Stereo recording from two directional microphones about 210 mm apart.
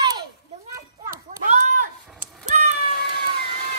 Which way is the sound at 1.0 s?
40° right (ahead or behind).